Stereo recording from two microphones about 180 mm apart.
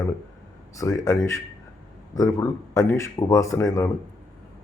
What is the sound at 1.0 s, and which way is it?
Speech, 15° left (ahead or behind).